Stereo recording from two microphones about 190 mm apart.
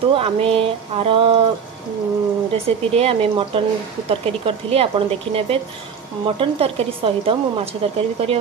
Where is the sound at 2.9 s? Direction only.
30° right (ahead or behind).